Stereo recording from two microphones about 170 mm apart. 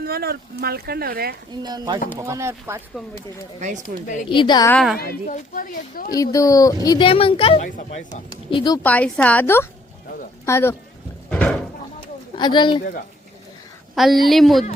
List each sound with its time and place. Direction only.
0.0 s speech: 65° right (ahead or behind)
1.6 s speech: 25° right (ahead or behind)
4.0 s speech: 50° left (ahead or behind)
4.3 s speech: 25° left (ahead or behind)
4.7 s a woman's voice: centre (ahead or behind)
5.2 s speech: 50° left (ahead or behind)
6.1 s speech: 20° left (ahead or behind)
7.1 s a woman's voice: 35° left (ahead or behind)
7.6 s speech: 45° left (ahead or behind)
8.3 s speech: 25° left (ahead or behind)
8.8 s a woman's voice: 10° left (ahead or behind)
11.3 s a sound: 5° left (ahead or behind)
12.4 s speech: 25° left (ahead or behind)
13.9 s a woman's voice: centre (ahead or behind)